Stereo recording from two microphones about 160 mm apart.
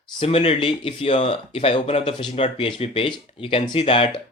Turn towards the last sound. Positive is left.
turn(degrees=35)  # may be behind; listen again after turning